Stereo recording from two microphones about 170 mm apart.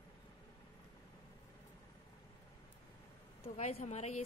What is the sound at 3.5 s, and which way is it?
Speech, 40° left (ahead or behind).